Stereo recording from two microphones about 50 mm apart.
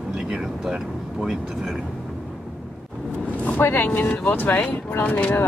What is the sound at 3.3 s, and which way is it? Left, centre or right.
Speech, left.